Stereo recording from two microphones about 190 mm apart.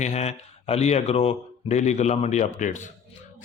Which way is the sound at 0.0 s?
35° left (ahead or behind).